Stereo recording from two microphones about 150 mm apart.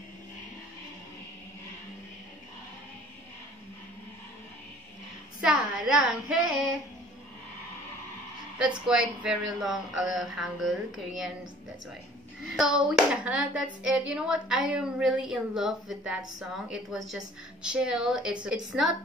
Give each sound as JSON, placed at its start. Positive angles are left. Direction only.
{"t": 5.9, "sound": "speech", "side_deg": -5}
{"t": 8.5, "sound": "speech", "side_deg": -5}
{"t": 12.5, "sound": "speech", "side_deg": -5}